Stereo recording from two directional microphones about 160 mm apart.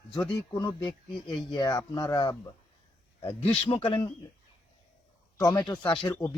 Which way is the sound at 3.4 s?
35° left (ahead or behind).